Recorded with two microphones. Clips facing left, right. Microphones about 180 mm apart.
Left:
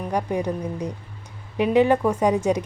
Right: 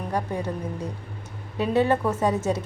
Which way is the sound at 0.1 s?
15° left (ahead or behind).